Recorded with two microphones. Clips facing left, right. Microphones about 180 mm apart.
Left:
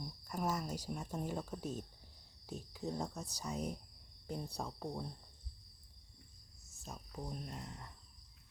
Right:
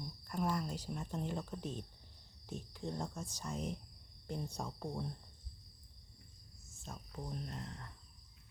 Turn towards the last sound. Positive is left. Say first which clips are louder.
# right 1 dB
turn(degrees=5)  # may be behind; listen again after turning